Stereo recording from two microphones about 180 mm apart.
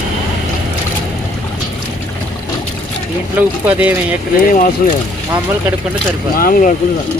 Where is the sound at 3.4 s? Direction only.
10° right (ahead or behind).